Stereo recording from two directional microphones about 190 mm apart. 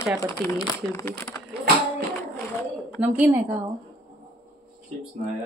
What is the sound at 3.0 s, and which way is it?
Speech, 10° right (ahead or behind).